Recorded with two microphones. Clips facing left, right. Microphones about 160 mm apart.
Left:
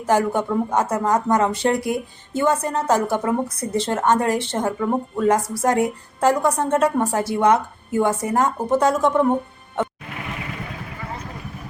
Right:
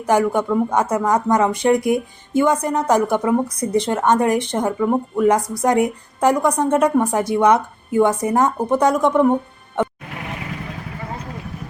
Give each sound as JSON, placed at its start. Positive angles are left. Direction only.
{"t": 0.1, "sound": "speech", "side_deg": -15}